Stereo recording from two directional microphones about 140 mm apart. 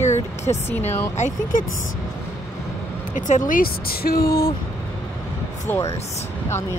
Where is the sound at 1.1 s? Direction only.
65° left (ahead or behind).